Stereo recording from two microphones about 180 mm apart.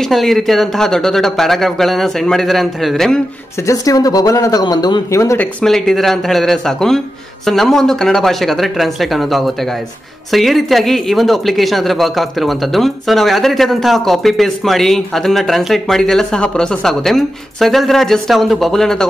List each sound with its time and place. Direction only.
0.0 s speech: centre (ahead or behind)
3.6 s speech: 20° left (ahead or behind)
5.6 s speech: 5° left (ahead or behind)